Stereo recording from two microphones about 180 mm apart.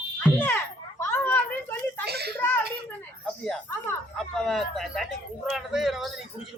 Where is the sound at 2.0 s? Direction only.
65° right (ahead or behind).